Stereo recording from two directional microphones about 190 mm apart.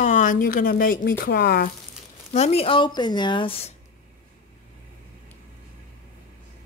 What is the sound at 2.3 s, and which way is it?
Speech, 35° left (ahead or behind).